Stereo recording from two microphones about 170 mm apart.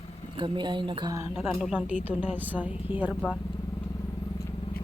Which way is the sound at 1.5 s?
5° right (ahead or behind).